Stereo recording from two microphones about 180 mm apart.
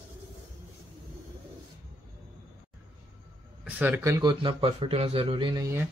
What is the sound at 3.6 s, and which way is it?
A man's voice, 10° right (ahead or behind).